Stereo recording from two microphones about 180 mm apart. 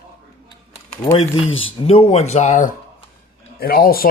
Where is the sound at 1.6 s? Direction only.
30° left (ahead or behind).